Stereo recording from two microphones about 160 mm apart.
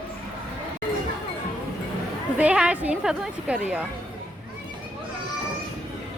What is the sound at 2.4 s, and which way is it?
Speech, 5° right (ahead or behind).